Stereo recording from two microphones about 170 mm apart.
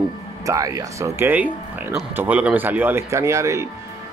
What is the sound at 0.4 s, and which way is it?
Speech, 20° right (ahead or behind).